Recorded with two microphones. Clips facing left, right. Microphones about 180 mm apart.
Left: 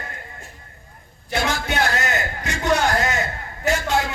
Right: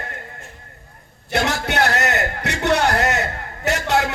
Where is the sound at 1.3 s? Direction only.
65° right (ahead or behind).